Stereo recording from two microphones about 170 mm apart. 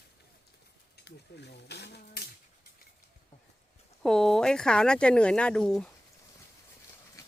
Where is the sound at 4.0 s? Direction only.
5° left (ahead or behind).